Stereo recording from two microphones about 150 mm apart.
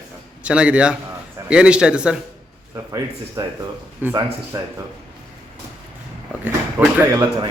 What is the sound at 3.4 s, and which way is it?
Speech, 25° right (ahead or behind).